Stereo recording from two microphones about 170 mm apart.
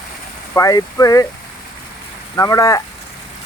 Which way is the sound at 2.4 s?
20° left (ahead or behind).